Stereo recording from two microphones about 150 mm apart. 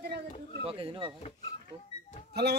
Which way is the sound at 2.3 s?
90° right.